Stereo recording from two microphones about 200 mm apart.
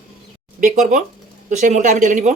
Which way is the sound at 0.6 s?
40° right (ahead or behind).